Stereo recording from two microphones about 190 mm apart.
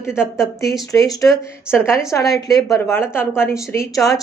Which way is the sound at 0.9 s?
20° left (ahead or behind).